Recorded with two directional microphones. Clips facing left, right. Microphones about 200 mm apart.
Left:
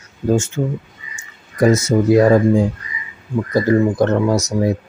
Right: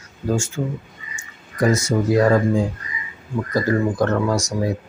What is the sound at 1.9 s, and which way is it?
Speech, 25° left (ahead or behind).